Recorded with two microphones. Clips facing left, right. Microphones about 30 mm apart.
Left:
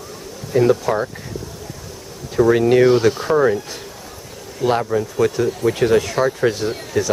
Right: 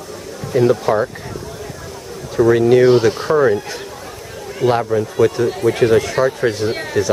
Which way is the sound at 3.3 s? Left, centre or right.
Centre.